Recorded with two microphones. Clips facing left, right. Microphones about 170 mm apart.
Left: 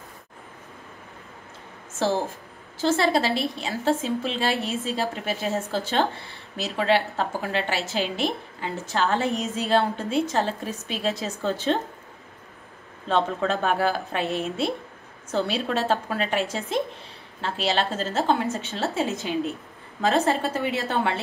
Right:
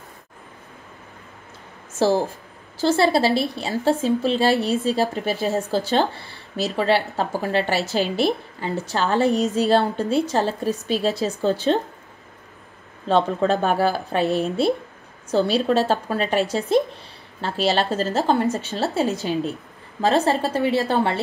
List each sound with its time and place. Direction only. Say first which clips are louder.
2.0 s speech: right 5 dB; 35° right (ahead or behind)
13.1 s speech: right 5 dB; 35° right (ahead or behind)